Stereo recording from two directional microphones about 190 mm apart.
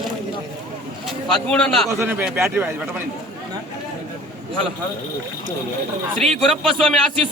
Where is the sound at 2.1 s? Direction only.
10° right (ahead or behind).